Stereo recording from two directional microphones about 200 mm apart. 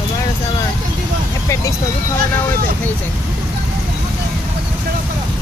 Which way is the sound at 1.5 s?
15° left (ahead or behind).